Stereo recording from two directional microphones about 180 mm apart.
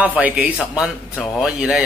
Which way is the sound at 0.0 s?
10° right (ahead or behind).